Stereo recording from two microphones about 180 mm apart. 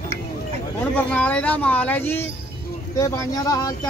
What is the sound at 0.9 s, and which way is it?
Speech, 10° left (ahead or behind).